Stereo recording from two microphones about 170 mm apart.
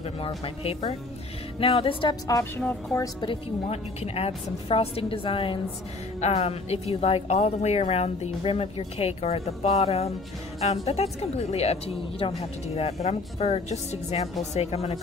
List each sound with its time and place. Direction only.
1.6 s speech: 35° left (ahead or behind)
2.2 s a woman's voice: 15° left (ahead or behind)
3.2 s speech: 35° left (ahead or behind)